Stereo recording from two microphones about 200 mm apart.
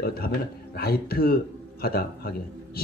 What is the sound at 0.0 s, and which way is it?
A man's voice, 50° left (ahead or behind).